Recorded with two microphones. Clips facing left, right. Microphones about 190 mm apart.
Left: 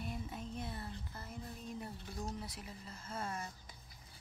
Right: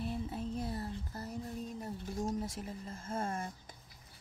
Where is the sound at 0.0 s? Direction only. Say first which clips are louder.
Right 6 dB; 30° right (ahead or behind); by 3.7 s 50° right (ahead or behind).